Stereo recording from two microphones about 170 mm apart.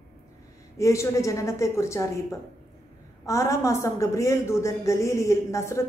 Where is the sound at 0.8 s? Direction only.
15° left (ahead or behind).